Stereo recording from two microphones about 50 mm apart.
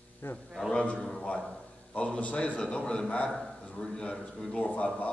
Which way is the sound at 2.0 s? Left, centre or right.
Left.